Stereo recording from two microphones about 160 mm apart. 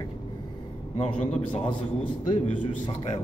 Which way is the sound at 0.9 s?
40° left (ahead or behind).